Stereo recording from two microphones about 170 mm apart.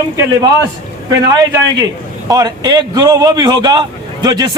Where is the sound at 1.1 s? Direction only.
20° right (ahead or behind).